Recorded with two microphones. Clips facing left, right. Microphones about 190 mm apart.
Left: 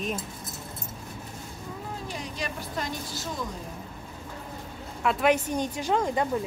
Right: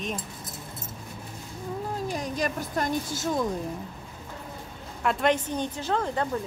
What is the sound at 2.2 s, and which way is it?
Speech, 45° right (ahead or behind).